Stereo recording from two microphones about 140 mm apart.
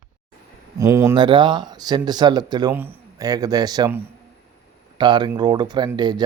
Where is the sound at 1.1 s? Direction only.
35° right (ahead or behind).